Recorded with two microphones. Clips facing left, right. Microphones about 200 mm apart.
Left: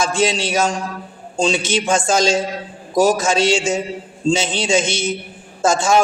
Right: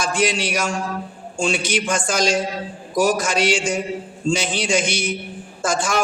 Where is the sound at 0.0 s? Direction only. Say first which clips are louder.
Left 3 dB; 25° left (ahead or behind).